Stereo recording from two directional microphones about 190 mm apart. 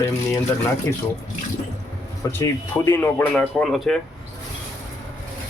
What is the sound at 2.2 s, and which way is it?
Speech, 15° left (ahead or behind).